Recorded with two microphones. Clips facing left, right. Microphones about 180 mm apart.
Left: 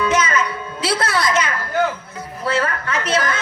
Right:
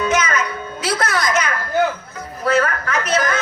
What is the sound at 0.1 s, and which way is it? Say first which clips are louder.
Music: left 1 dB; 30° left (ahead or behind).